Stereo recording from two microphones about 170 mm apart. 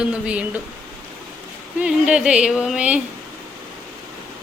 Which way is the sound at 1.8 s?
5° right (ahead or behind).